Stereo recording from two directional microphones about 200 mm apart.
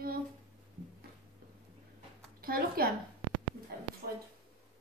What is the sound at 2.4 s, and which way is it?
Speech, 50° right (ahead or behind).